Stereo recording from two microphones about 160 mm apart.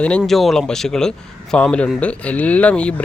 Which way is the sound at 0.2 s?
Centre (ahead or behind).